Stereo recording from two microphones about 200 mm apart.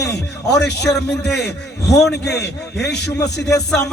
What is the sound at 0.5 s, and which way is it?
A man's voice, 55° left (ahead or behind).